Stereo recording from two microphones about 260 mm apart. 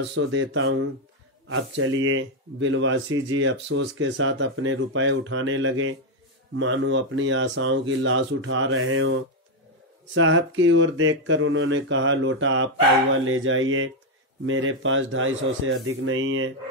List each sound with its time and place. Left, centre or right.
0.1 s speech: right